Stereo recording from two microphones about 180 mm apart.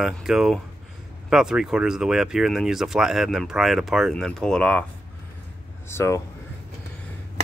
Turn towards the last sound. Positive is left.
turn(degrees=15)  # may be behind; listen again after turning